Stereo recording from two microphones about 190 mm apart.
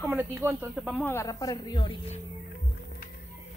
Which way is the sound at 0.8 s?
Centre (ahead or behind).